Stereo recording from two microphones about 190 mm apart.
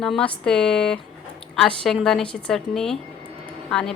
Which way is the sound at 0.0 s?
5° left (ahead or behind).